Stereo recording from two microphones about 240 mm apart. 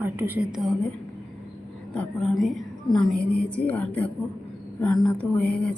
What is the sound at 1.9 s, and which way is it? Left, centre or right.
A woman's voice, centre.